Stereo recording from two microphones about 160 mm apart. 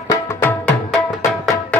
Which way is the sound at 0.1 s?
15° left (ahead or behind).